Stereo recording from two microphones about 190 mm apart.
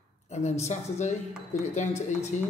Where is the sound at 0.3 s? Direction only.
35° left (ahead or behind).